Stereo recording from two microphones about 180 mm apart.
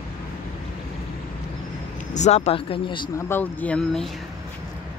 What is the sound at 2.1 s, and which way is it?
Speech, 40° left (ahead or behind).